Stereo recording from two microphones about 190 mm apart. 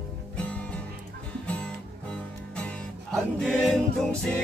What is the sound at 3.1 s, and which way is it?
Choir, 5° left (ahead or behind).